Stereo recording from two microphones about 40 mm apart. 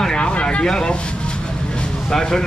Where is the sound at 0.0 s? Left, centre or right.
Left.